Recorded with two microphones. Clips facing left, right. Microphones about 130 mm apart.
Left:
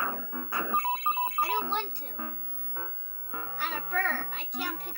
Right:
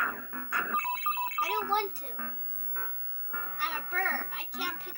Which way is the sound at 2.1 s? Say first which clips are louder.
Left 3 dB; 25° left (ahead or behind).